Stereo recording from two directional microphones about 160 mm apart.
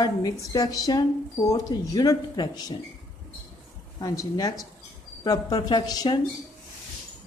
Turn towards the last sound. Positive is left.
turn(degrees=25)  # may be behind; listen again after turning